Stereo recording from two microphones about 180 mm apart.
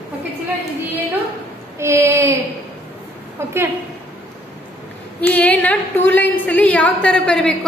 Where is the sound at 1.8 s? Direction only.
15° right (ahead or behind).